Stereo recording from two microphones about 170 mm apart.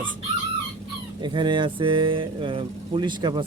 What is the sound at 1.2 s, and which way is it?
Speech, 25° right (ahead or behind).